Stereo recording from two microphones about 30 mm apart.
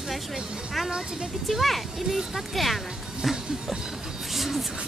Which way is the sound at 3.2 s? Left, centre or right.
Centre.